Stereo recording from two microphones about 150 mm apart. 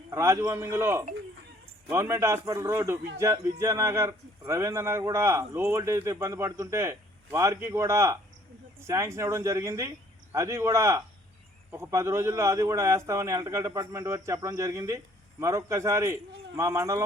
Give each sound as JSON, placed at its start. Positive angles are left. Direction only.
{"t": 0.1, "sound": "speech", "side_deg": -20}